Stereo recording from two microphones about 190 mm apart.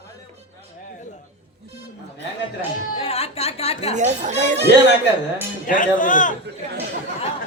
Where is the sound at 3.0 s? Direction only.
30° left (ahead or behind).